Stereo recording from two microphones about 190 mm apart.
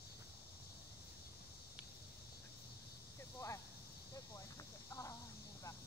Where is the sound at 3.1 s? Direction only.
15° left (ahead or behind).